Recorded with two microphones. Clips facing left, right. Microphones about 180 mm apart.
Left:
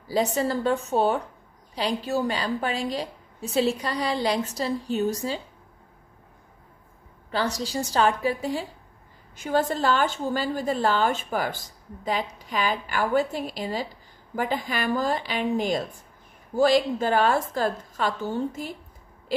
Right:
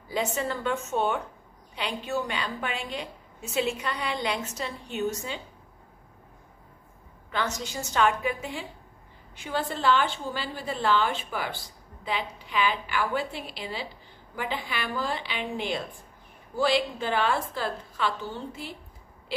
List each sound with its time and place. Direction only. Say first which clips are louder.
0.1 s a woman's voice: left 5 dB; 35° left (ahead or behind)
7.2 s a woman's voice: left 4 dB; 35° left (ahead or behind)